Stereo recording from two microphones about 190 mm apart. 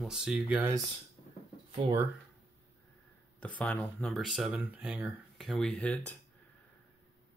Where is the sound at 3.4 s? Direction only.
5° left (ahead or behind).